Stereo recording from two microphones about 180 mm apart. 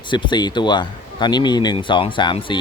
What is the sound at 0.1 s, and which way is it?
Speech, 25° left (ahead or behind).